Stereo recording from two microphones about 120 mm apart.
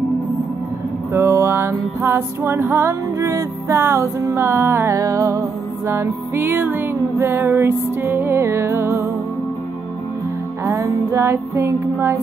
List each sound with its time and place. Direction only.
1.1 s music: 25° right (ahead or behind)
10.6 s music: 25° right (ahead or behind)